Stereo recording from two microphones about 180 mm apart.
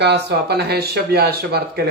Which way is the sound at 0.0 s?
65° right (ahead or behind).